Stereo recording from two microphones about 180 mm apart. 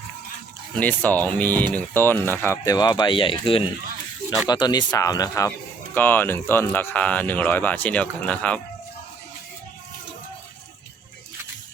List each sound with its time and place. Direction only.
0.8 s speech: 10° left (ahead or behind)